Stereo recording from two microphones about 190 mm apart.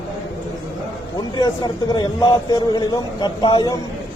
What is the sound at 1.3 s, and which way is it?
A man's voice, 20° left (ahead or behind).